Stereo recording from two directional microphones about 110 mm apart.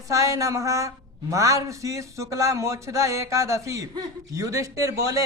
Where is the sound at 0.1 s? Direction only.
30° right (ahead or behind).